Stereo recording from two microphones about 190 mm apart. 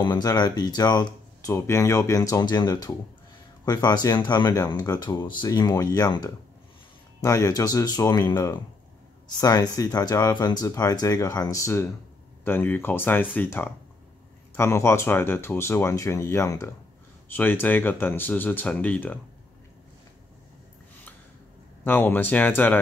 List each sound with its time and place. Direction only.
0.0 s speech: 20° left (ahead or behind)
21.8 s speech: 10° left (ahead or behind)